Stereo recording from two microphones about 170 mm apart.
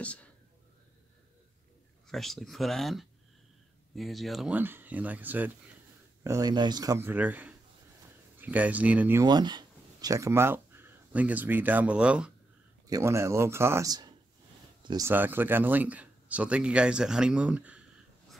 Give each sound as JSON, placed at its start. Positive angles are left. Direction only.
{"t": 0.0, "sound": "speech", "side_deg": 10}
{"t": 2.0, "sound": "speech", "side_deg": 0}
{"t": 6.2, "sound": "speech", "side_deg": -20}
{"t": 9.2, "sound": "speech", "side_deg": -25}
{"t": 14.8, "sound": "a sound", "side_deg": -25}
{"t": 15.0, "sound": "speech", "side_deg": -10}